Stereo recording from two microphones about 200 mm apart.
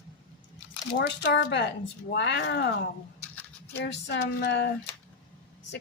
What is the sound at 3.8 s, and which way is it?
Speech, 60° left (ahead or behind).